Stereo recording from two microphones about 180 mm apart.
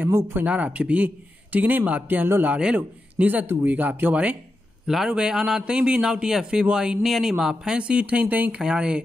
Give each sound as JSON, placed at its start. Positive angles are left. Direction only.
{"t": 0.0, "sound": "a man's voice", "side_deg": -15}